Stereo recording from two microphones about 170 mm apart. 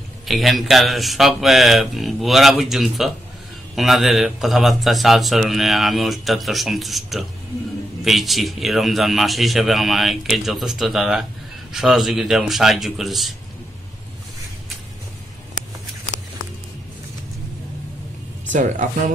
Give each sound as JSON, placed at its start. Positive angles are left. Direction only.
{"t": 0.3, "sound": "speech", "side_deg": 0}
{"t": 18.5, "sound": "speech", "side_deg": -50}